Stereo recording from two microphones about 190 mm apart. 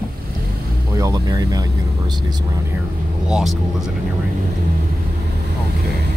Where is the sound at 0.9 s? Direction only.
20° right (ahead or behind).